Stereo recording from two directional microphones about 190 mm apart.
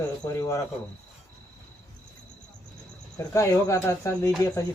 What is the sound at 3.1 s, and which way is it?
Speech, 15° left (ahead or behind).